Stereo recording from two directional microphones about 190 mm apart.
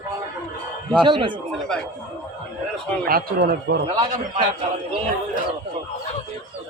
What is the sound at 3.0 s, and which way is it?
Speech, 55° right (ahead or behind).